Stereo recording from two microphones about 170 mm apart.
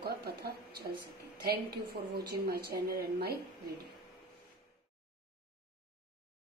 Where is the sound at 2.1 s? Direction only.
70° right (ahead or behind).